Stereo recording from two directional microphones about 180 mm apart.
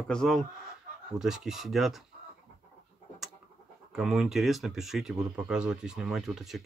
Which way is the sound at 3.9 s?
Centre (ahead or behind).